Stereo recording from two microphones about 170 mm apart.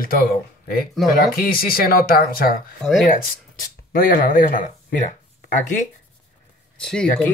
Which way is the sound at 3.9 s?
55° left (ahead or behind).